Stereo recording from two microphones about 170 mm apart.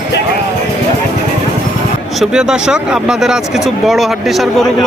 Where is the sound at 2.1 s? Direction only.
5° right (ahead or behind).